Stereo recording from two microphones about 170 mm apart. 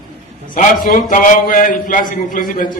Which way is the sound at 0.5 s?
55° left (ahead or behind).